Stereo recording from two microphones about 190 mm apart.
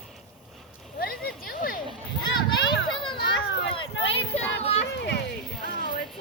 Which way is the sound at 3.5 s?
65° left (ahead or behind).